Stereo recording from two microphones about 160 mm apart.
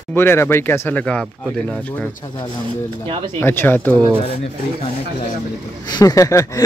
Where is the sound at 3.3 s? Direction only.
15° left (ahead or behind).